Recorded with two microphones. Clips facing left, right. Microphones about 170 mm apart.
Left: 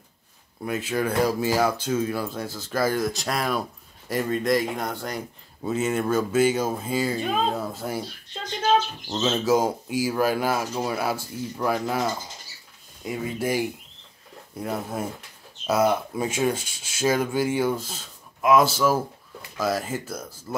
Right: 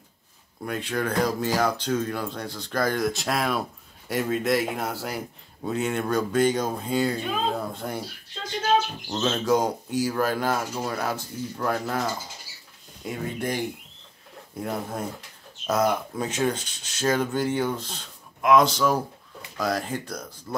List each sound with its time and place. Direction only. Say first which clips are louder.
0.7 s speech: left 2 dB; 5° left (ahead or behind)
9.1 s speech: left 1 dB; 5° left (ahead or behind)